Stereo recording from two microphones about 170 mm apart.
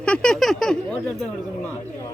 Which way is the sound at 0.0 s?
5° left (ahead or behind).